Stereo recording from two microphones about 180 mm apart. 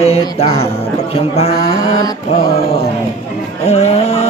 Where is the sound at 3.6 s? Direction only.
35° left (ahead or behind).